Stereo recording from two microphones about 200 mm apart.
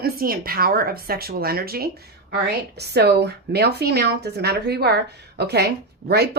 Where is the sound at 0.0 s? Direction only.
45° right (ahead or behind).